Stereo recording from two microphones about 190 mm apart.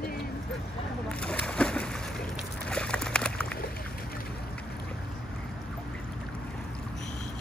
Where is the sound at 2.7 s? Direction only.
5° left (ahead or behind).